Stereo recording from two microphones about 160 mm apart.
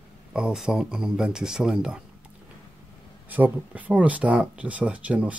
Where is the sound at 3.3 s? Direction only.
10° right (ahead or behind).